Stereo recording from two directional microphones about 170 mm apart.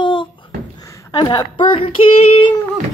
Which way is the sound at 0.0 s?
30° left (ahead or behind).